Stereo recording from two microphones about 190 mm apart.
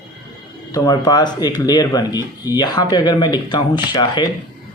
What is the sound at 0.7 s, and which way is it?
Speech, 20° left (ahead or behind).